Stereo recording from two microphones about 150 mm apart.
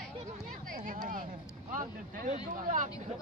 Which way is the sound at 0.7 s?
60° right (ahead or behind).